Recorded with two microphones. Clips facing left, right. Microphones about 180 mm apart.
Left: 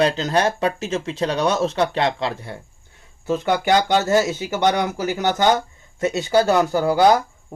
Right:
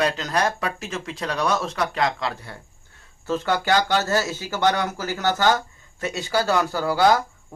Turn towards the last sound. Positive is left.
turn(degrees=20)  # may be behind; listen again after turning